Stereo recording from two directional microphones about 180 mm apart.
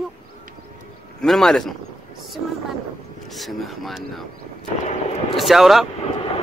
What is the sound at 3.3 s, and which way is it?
Speech, centre (ahead or behind).